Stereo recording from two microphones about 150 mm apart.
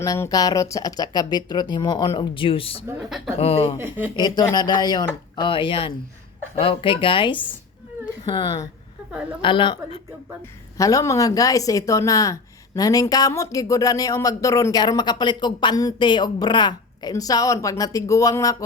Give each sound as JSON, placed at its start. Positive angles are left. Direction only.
{"t": 0.0, "sound": "a woman's voice", "side_deg": 25}
{"t": 3.8, "sound": "speech", "side_deg": -15}
{"t": 4.2, "sound": "a woman's voice", "side_deg": 25}
{"t": 10.8, "sound": "a woman's voice", "side_deg": 20}